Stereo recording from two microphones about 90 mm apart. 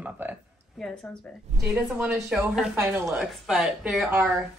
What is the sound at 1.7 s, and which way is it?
Speech, 15° right (ahead or behind).